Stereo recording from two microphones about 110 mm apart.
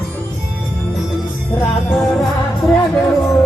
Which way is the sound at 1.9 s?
5° left (ahead or behind).